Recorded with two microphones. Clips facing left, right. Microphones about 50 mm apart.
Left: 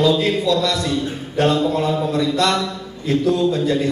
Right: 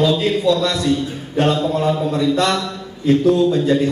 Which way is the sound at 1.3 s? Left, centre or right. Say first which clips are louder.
Even; right.